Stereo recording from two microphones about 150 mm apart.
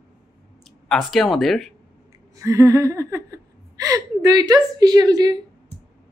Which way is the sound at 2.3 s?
20° right (ahead or behind).